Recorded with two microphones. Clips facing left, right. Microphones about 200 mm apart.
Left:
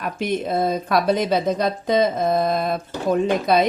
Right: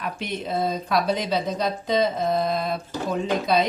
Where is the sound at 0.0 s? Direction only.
50° left (ahead or behind).